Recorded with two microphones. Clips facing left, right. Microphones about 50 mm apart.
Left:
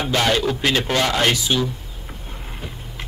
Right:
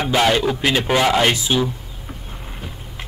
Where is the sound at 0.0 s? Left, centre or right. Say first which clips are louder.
Right 3 dB; centre.